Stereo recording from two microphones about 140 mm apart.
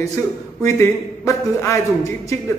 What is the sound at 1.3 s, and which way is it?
Speech, 20° left (ahead or behind).